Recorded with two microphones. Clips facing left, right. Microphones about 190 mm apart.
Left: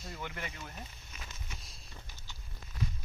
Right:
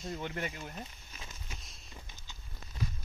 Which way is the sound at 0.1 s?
35° right (ahead or behind).